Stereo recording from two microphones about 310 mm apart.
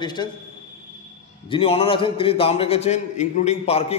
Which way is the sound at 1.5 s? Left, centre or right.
Centre.